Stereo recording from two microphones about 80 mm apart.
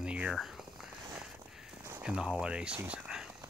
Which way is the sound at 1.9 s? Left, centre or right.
Centre.